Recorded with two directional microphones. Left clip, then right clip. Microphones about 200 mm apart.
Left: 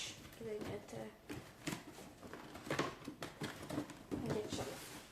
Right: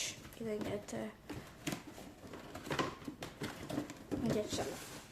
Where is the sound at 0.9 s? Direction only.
50° right (ahead or behind).